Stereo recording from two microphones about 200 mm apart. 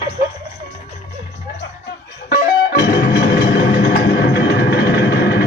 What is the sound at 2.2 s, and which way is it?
Music, 50° left (ahead or behind).